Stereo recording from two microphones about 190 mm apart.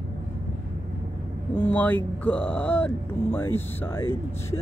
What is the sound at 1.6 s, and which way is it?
Speech, 10° left (ahead or behind).